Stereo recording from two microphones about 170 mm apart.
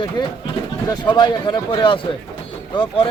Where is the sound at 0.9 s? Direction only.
30° left (ahead or behind).